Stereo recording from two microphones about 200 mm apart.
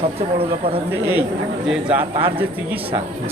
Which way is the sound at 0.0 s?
30° right (ahead or behind).